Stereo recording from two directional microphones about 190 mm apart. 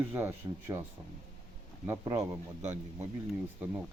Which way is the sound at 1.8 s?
20° right (ahead or behind).